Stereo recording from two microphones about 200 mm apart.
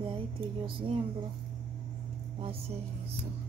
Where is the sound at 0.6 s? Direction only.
25° right (ahead or behind).